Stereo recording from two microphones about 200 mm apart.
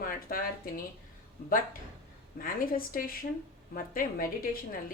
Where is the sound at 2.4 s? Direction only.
45° left (ahead or behind).